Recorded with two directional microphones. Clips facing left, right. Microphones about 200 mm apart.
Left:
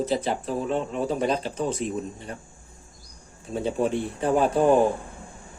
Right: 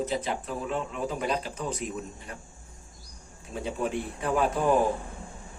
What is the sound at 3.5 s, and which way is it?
Speech, 30° left (ahead or behind).